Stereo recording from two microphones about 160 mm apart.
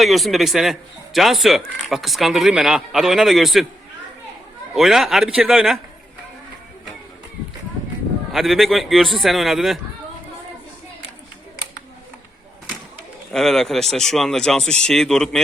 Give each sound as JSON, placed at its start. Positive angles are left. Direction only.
{"t": 0.0, "sound": "speech", "side_deg": 0}
{"t": 4.7, "sound": "speech", "side_deg": 0}
{"t": 8.3, "sound": "speech", "side_deg": 0}
{"t": 13.3, "sound": "speech", "side_deg": 0}